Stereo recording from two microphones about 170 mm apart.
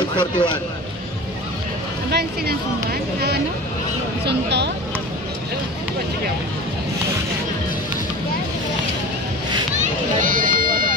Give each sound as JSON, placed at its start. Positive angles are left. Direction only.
{"t": 0.1, "sound": "speech", "side_deg": 25}
{"t": 2.0, "sound": "speech", "side_deg": -70}
{"t": 4.3, "sound": "speech", "side_deg": -80}
{"t": 9.8, "sound": "run", "side_deg": -55}